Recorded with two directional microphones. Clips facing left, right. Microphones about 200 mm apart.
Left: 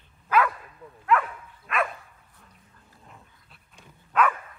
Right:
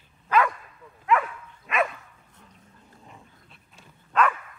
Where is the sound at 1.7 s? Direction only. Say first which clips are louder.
Right 2 dB; 5° right (ahead or behind).